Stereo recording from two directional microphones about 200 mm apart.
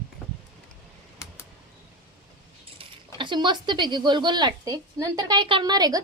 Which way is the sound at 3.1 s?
25° right (ahead or behind).